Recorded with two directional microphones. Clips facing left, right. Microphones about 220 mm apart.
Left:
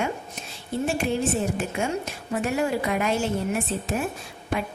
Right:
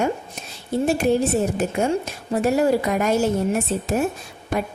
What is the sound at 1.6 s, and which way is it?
Speech, 40° right (ahead or behind).